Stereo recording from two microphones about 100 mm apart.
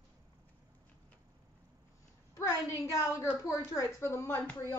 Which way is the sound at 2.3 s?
30° left (ahead or behind).